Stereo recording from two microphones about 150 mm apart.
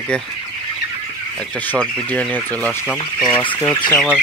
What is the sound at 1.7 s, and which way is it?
Speech, 10° left (ahead or behind).